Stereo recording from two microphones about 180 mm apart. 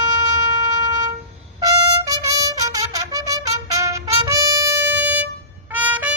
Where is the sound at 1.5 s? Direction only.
25° right (ahead or behind).